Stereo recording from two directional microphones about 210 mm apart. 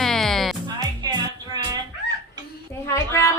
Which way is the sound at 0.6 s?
20° right (ahead or behind).